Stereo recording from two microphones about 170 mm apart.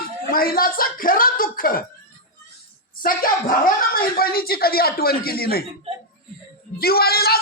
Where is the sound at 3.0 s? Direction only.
60° left (ahead or behind).